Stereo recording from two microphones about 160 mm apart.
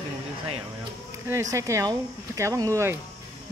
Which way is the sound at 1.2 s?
20° right (ahead or behind).